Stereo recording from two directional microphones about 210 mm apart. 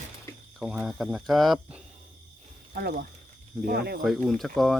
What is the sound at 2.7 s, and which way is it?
Speech, 50° right (ahead or behind).